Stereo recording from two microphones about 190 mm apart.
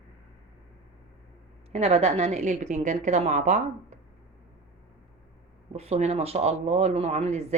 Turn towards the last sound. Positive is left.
turn(degrees=-35)  # may be behind; listen again after turning